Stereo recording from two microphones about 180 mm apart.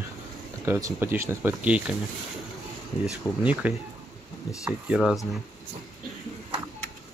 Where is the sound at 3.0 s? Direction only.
10° right (ahead or behind).